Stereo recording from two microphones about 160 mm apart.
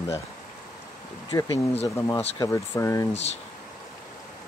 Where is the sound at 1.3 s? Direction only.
20° left (ahead or behind).